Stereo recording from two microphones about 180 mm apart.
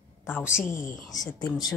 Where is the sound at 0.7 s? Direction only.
45° left (ahead or behind).